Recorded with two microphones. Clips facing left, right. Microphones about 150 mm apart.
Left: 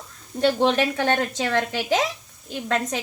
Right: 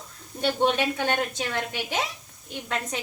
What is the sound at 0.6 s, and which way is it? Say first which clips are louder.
A woman's voice: left 3 dB; 90° left.